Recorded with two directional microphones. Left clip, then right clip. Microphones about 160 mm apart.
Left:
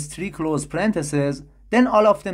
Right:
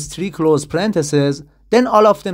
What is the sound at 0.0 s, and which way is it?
Speech, 30° right (ahead or behind).